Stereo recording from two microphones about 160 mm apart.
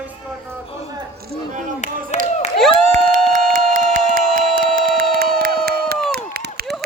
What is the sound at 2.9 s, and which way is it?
Music, 55° right (ahead or behind).